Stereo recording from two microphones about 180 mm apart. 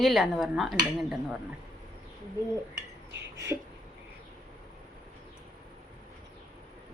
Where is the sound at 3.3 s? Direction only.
15° right (ahead or behind).